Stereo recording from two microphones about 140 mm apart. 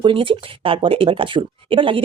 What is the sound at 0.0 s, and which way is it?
Speech, 40° right (ahead or behind).